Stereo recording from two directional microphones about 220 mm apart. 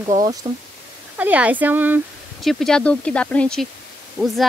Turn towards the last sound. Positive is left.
turn(degrees=-5)  # may be behind; listen again after turning